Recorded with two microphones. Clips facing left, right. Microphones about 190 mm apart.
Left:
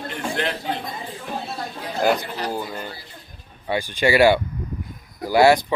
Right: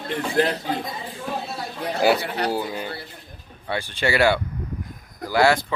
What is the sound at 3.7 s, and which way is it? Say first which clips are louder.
Speech: left 4 dB; 10° left (ahead or behind).